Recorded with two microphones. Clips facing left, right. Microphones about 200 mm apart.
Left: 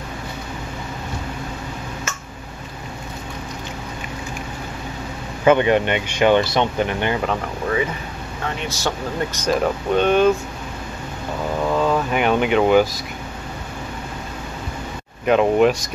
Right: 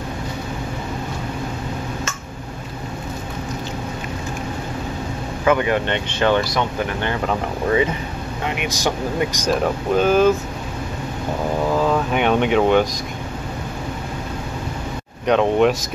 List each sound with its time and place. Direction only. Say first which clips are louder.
5.4 s speech: left 3 dB; 25° left (ahead or behind)
5.9 s speech: left 2 dB; 10° left (ahead or behind)
6.4 s speech: left 2 dB; 25° left (ahead or behind)
8.5 s speech: right 2 dB; 15° right (ahead or behind)
9.5 s speech: left 1 dB; centre (ahead or behind)
11.7 s speech: left 1 dB; centre (ahead or behind)
15.2 s speech: left 1 dB; 5° left (ahead or behind)